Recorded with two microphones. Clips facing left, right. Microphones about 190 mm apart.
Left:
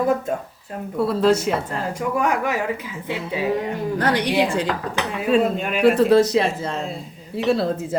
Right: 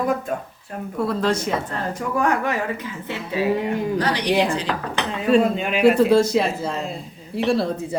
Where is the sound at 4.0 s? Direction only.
50° left (ahead or behind).